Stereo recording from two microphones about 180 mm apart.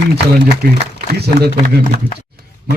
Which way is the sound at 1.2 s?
65° right (ahead or behind).